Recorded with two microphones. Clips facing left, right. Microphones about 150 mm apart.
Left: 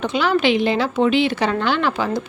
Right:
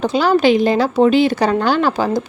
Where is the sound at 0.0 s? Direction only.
35° right (ahead or behind).